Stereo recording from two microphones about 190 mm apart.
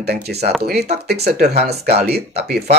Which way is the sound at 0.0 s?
60° right (ahead or behind).